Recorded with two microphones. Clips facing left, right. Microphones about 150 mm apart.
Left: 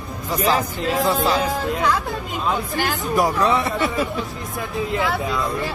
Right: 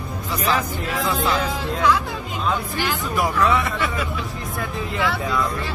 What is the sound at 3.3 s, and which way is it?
Speech, 35° left (ahead or behind).